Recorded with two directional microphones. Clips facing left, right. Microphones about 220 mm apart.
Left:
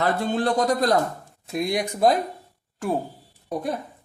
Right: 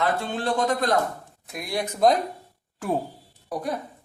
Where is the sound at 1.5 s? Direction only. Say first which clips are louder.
Left 5 dB; 20° left (ahead or behind).